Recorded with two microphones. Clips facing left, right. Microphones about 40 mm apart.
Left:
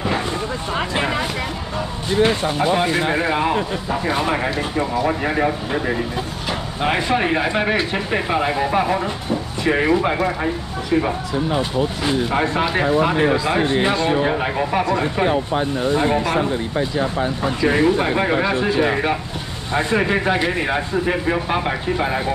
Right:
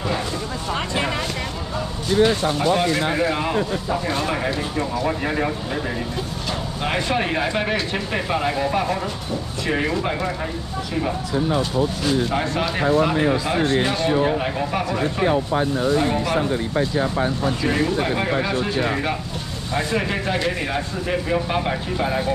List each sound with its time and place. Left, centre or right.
0.7 s a sound: centre
2.6 s a man's voice: left
17.6 s a man's voice: centre